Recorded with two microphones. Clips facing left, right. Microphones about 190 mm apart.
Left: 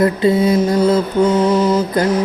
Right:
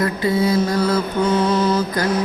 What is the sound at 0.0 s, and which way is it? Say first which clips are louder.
Mantra: left 5 dB; 25° left (ahead or behind).